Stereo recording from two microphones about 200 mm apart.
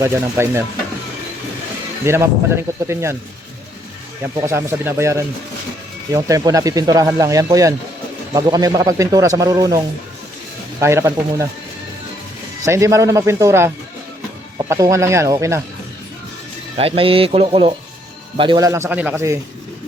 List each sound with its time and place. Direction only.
0.0 s speech: 15° right (ahead or behind)
2.0 s speech: 10° right (ahead or behind)
4.4 s speech: 15° right (ahead or behind)
12.6 s speech: 15° right (ahead or behind)
16.7 s speech: 30° right (ahead or behind)